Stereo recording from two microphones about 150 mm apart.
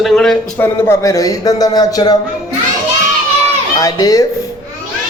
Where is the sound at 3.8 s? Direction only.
25° left (ahead or behind).